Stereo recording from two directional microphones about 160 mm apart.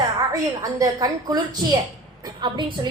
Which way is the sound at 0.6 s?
20° right (ahead or behind).